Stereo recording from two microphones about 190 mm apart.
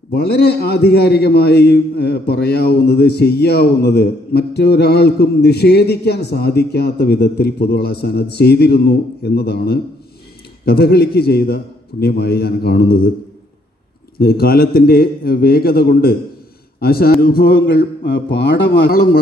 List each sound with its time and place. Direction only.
0.1 s a man's voice: 55° left (ahead or behind)
14.1 s a man's voice: 55° left (ahead or behind); by 18.7 s 70° left (ahead or behind)